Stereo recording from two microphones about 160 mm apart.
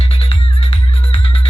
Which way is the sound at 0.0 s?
35° left (ahead or behind).